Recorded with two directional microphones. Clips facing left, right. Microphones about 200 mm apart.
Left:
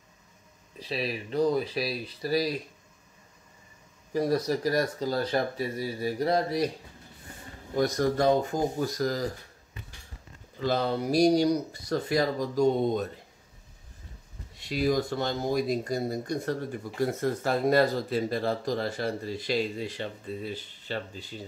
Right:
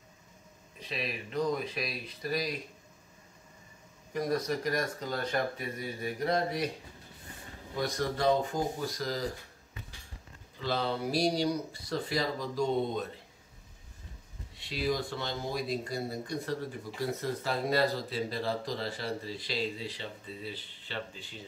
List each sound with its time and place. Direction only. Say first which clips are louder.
0.7 s speech: left 5 dB; 35° left (ahead or behind)
4.1 s speech: left 5 dB; 35° left (ahead or behind)
7.7 s speech: left 7 dB; 45° left (ahead or behind)
10.6 s speech: left 5 dB; 45° left (ahead or behind)
14.6 s speech: left 6 dB; 45° left (ahead or behind)